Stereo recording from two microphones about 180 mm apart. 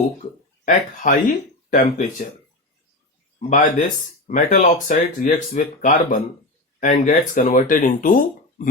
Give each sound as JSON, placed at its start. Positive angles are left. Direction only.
{"t": 0.6, "sound": "speech", "side_deg": 45}
{"t": 3.3, "sound": "speech", "side_deg": 45}